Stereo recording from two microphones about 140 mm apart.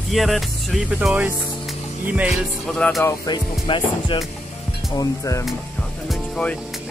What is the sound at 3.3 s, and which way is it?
Speech, 35° left (ahead or behind).